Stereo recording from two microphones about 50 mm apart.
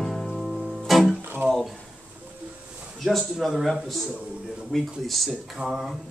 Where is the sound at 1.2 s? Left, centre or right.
Right.